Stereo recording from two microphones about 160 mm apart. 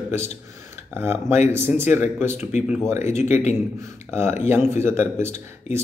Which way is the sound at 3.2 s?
45° left (ahead or behind).